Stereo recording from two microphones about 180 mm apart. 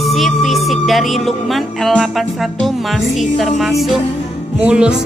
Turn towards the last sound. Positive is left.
turn(degrees=-5)  # may be behind; listen again after turning